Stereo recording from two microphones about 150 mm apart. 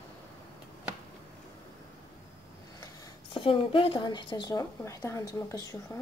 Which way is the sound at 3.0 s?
35° left (ahead or behind).